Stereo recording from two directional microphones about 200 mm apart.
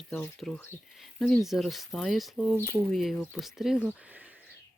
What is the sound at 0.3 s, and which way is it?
Speech, 5° left (ahead or behind).